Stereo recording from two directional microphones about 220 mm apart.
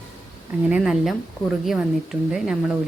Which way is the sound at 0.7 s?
Centre (ahead or behind).